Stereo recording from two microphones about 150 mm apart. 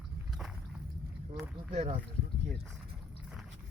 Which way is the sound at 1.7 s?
45° right (ahead or behind).